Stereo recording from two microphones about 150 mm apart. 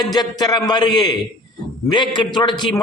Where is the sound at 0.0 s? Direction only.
25° left (ahead or behind).